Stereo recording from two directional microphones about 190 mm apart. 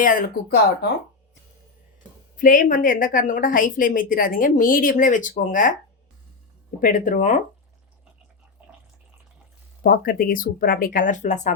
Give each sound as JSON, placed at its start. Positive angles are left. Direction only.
{"t": 0.0, "sound": "a woman's voice", "side_deg": 45}
{"t": 2.3, "sound": "a woman's voice", "side_deg": 45}
{"t": 6.8, "sound": "a woman's voice", "side_deg": 45}
{"t": 8.6, "sound": "bathtub", "side_deg": -5}
{"t": 9.8, "sound": "a woman's voice", "side_deg": 45}